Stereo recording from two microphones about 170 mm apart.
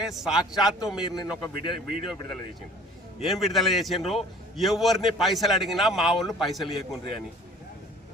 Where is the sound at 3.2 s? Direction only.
Centre (ahead or behind).